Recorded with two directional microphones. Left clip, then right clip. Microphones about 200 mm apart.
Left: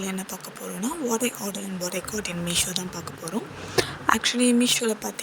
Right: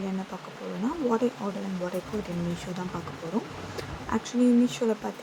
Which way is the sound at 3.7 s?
50° left (ahead or behind).